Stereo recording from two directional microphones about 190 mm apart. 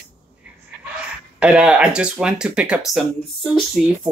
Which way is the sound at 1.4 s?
5° right (ahead or behind).